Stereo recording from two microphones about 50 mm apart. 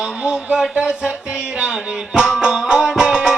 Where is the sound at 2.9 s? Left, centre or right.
Centre.